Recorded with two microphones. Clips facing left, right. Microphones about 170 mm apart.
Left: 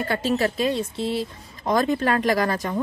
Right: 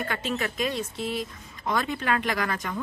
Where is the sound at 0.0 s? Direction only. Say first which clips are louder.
Left 7 dB; 35° left (ahead or behind).